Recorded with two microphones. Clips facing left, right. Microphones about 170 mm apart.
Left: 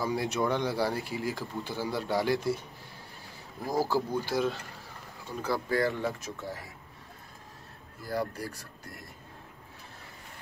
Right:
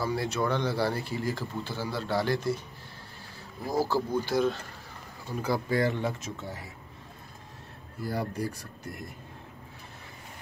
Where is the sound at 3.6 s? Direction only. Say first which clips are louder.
Right 1 dB; 10° left (ahead or behind).